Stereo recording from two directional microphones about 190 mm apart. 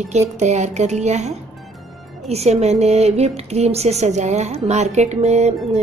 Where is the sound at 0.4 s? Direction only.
40° right (ahead or behind).